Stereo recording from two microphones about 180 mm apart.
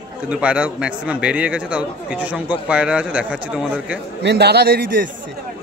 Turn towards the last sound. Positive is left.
turn(degrees=-55)  # may be behind; listen again after turning